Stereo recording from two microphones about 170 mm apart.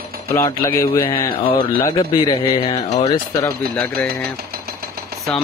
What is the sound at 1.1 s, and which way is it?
A man's voice, 30° left (ahead or behind).